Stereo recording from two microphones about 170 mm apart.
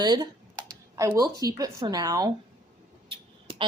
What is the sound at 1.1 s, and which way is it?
Speech, 20° right (ahead or behind).